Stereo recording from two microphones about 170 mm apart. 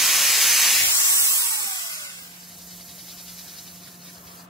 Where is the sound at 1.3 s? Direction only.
20° left (ahead or behind).